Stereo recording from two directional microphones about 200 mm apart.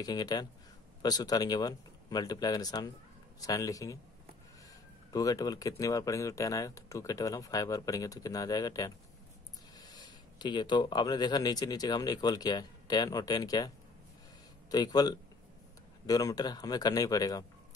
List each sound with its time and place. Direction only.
0.0 s speech: 20° left (ahead or behind)
5.1 s speech: 15° left (ahead or behind)
14.7 s speech: 20° left (ahead or behind)